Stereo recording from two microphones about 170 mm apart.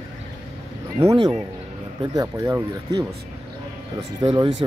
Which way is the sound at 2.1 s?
20° right (ahead or behind).